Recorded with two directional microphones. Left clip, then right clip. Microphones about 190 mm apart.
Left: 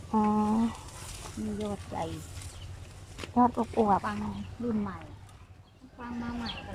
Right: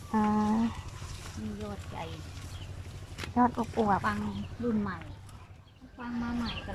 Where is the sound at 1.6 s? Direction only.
30° left (ahead or behind).